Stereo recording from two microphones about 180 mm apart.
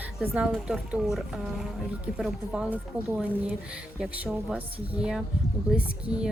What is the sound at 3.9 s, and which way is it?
Speech, 5° right (ahead or behind).